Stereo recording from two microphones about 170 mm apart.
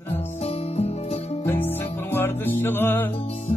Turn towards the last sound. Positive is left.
turn(degrees=35)  # may be behind; listen again after turning